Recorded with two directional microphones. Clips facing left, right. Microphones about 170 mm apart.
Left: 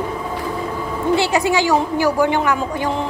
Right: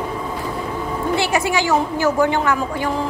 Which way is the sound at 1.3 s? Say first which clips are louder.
Left 2 dB; 20° left (ahead or behind).